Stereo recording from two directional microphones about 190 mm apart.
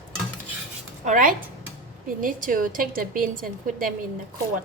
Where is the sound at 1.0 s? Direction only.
45° right (ahead or behind).